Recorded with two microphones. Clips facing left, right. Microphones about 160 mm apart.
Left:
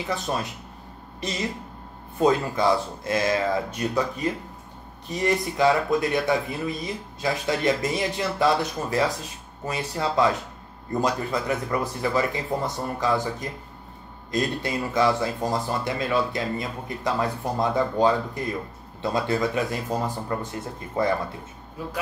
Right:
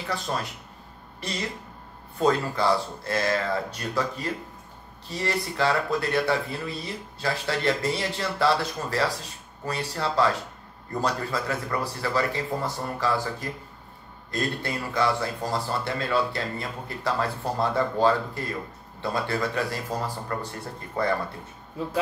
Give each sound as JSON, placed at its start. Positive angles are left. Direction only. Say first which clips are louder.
{"t": 0.1, "sound": "speech", "louder": "left 1 dB", "side_deg": 20}
{"t": 2.1, "sound": "speech", "louder": "left 2 dB", "side_deg": 20}